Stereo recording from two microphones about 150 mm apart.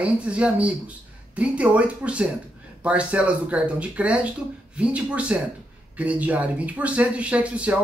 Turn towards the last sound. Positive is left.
turn(degrees=-10)  # may be behind; listen again after turning